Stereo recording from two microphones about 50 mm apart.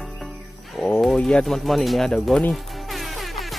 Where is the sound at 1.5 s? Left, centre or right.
Centre.